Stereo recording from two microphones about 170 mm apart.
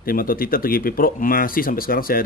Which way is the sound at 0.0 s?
60° left (ahead or behind).